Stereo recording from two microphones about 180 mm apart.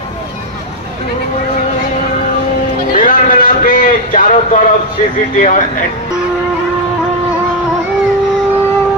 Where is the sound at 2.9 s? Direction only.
50° left (ahead or behind).